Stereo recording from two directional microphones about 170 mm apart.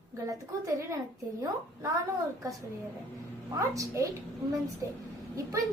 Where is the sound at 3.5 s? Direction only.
20° right (ahead or behind).